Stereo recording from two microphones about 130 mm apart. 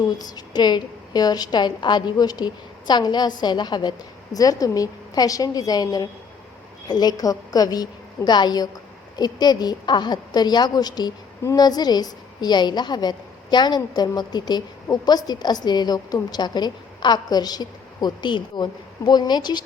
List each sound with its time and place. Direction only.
0.2 s a woman's voice: 30° left (ahead or behind)